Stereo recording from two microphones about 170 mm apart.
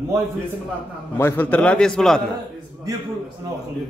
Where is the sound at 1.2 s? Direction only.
10° left (ahead or behind).